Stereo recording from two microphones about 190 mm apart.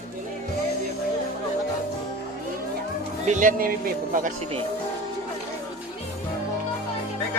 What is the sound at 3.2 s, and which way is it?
Speech, 40° right (ahead or behind).